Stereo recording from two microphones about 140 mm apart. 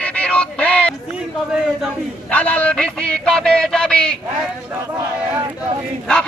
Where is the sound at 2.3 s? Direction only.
10° left (ahead or behind).